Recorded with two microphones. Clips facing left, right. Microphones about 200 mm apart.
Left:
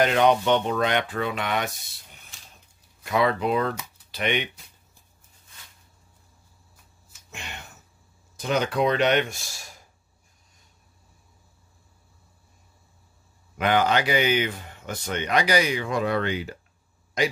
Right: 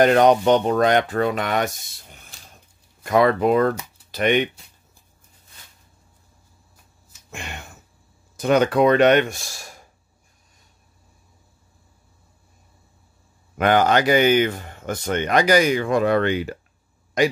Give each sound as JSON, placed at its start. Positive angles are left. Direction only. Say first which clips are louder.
{"t": 0.0, "sound": "speech", "louder": "right 5 dB", "side_deg": -45}
{"t": 7.2, "sound": "a sound", "louder": "right 5 dB", "side_deg": -50}
{"t": 8.4, "sound": "speech", "louder": "right 7 dB", "side_deg": -55}
{"t": 13.6, "sound": "speech", "louder": "right 4 dB", "side_deg": -50}